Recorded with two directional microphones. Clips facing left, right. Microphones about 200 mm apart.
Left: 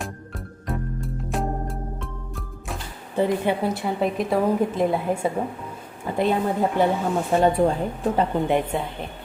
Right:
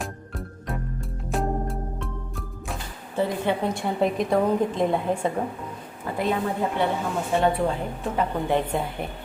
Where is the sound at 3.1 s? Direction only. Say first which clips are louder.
Left 3 dB; 15° left (ahead or behind).